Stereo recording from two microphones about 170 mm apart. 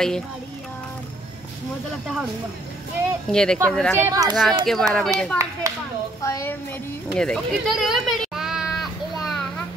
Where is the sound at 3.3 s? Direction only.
5° left (ahead or behind).